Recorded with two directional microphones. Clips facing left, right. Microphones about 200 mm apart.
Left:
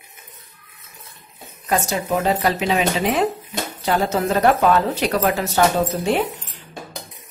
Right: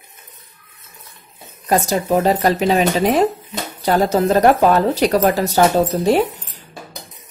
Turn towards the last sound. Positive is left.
turn(degrees=-40)  # may be behind; listen again after turning